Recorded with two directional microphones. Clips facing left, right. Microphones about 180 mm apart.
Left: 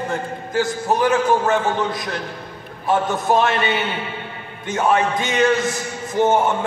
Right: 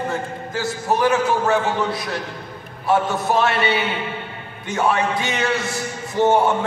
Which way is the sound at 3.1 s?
20° left (ahead or behind).